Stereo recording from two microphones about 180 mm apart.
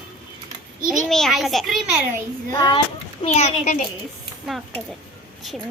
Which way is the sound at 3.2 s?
35° left (ahead or behind).